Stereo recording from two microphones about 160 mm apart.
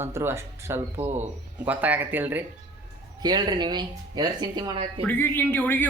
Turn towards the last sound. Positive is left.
turn(degrees=10)  # may be behind; listen again after turning